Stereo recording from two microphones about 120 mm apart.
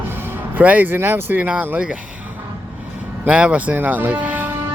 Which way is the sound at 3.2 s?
10° right (ahead or behind).